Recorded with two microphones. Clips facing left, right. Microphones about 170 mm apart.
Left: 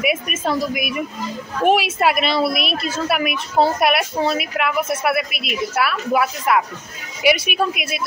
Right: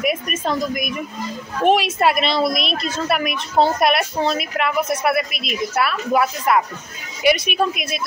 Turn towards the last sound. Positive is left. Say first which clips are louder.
# right 1 dB
turn(degrees=5)  # may be behind; listen again after turning